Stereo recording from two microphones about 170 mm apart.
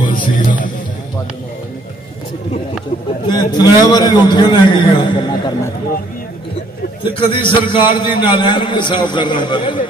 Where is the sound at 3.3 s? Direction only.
25° left (ahead or behind).